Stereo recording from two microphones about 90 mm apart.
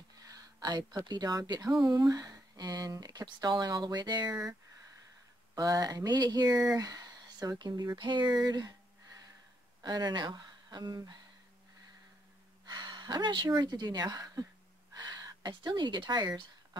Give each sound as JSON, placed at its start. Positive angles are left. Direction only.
{"t": 0.2, "sound": "a sound", "side_deg": -50}
{"t": 1.0, "sound": "speech", "side_deg": -50}
{"t": 5.5, "sound": "speech", "side_deg": -45}
{"t": 12.6, "sound": "a woman's voice", "side_deg": -55}